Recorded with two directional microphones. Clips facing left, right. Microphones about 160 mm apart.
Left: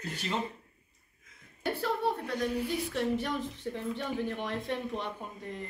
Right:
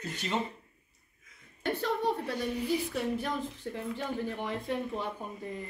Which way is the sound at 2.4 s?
Centre (ahead or behind).